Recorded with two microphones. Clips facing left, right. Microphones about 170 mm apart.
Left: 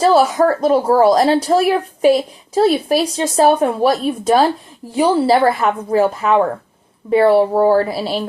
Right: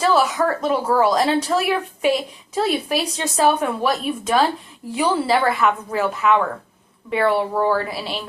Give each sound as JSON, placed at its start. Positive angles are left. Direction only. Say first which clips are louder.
{"t": 0.0, "sound": "speech", "louder": "left 6 dB", "side_deg": 35}